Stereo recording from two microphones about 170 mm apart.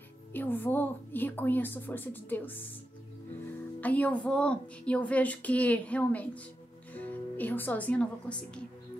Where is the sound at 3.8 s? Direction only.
10° left (ahead or behind).